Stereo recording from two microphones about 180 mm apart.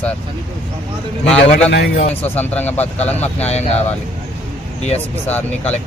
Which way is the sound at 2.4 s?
10° left (ahead or behind).